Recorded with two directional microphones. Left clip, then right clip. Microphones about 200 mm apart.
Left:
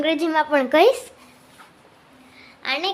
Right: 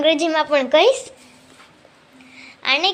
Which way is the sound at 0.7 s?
15° left (ahead or behind).